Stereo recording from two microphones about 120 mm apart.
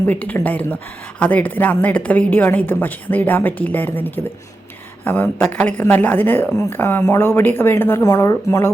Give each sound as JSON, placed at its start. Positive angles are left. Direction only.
{"t": 0.0, "sound": "a woman's voice", "side_deg": 15}